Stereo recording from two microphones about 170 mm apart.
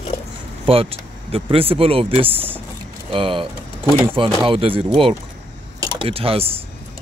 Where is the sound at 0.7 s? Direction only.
35° right (ahead or behind).